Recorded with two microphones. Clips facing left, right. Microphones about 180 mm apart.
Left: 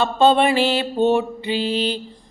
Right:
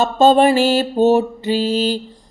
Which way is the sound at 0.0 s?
40° right (ahead or behind).